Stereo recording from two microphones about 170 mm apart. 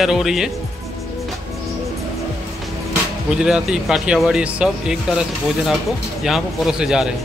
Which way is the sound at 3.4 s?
5° right (ahead or behind).